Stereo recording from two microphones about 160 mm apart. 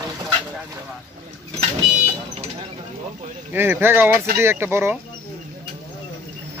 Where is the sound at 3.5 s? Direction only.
15° right (ahead or behind).